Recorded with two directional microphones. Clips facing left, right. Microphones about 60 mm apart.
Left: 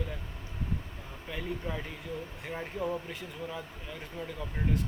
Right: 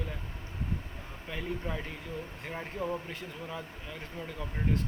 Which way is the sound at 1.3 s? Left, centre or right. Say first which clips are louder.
Even; centre.